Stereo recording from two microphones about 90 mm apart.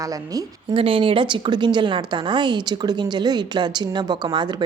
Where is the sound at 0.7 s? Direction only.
80° right; by 4.6 s 60° right (ahead or behind).